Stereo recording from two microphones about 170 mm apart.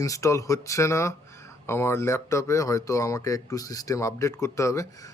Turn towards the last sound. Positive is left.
turn(degrees=20)  # may be behind; listen again after turning